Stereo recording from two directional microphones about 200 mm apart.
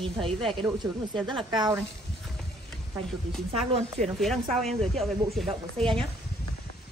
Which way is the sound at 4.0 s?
Centre (ahead or behind).